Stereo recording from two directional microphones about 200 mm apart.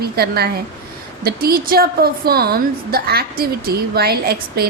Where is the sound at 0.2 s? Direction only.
50° right (ahead or behind).